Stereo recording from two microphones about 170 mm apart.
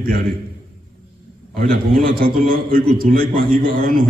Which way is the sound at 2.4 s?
60° right (ahead or behind).